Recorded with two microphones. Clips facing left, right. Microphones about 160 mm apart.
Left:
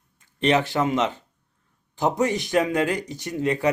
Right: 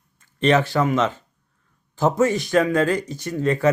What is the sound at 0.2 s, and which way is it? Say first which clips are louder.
Speech: right 3 dB; 15° left (ahead or behind).